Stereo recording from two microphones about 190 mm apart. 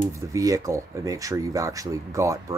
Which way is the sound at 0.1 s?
15° right (ahead or behind).